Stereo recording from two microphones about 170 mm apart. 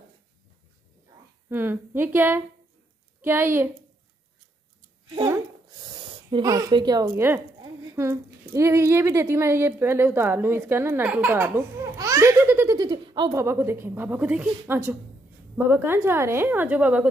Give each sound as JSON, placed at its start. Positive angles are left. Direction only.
{"t": 1.5, "sound": "a woman's voice", "side_deg": -10}
{"t": 5.1, "sound": "a woman's voice", "side_deg": -25}